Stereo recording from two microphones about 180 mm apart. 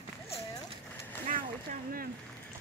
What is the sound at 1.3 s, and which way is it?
Vehicle, 45° right (ahead or behind).